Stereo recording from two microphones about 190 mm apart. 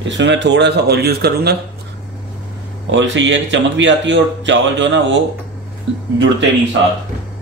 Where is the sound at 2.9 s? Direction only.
75° right (ahead or behind).